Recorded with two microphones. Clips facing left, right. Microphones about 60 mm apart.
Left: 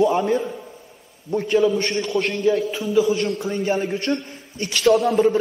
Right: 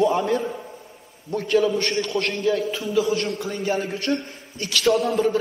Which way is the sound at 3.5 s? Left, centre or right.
Left.